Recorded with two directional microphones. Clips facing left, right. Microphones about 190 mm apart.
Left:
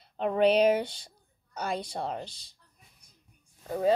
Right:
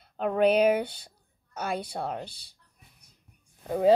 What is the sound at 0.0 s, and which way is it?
A woman's voice, centre (ahead or behind).